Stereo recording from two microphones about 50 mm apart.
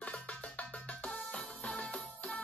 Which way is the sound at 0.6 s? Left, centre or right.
Left.